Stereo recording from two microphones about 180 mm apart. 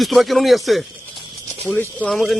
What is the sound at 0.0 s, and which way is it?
Speech, centre (ahead or behind).